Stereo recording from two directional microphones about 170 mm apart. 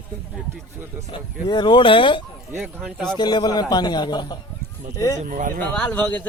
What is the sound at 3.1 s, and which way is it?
A man's voice, 25° left (ahead or behind).